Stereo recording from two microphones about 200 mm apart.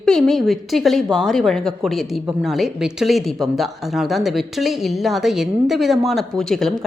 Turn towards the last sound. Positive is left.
turn(degrees=0)  # may be behind; listen again after turning